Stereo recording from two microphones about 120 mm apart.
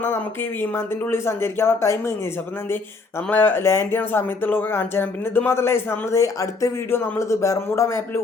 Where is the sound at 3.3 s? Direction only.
15° left (ahead or behind).